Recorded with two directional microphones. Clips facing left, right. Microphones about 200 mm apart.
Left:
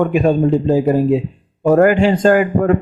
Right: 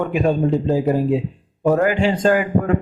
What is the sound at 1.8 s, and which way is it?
Speech, 55° left (ahead or behind).